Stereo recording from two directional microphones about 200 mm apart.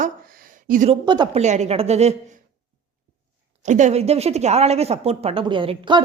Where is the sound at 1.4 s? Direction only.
35° right (ahead or behind).